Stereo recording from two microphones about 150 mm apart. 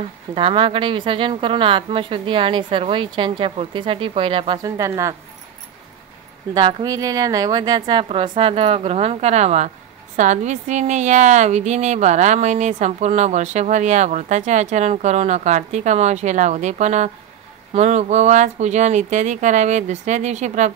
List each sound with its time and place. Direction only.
0.3 s a woman's voice: 35° right (ahead or behind)
4.6 s a woman's voice: 20° right (ahead or behind)
6.5 s a woman's voice: 25° right (ahead or behind); by 20.7 s 50° right (ahead or behind)